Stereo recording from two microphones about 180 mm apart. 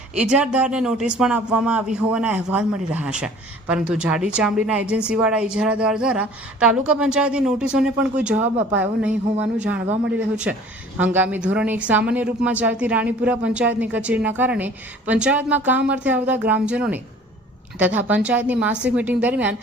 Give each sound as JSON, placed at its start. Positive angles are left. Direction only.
{"t": 0.2, "sound": "a woman's voice", "side_deg": -5}
{"t": 10.9, "sound": "a woman's voice", "side_deg": -10}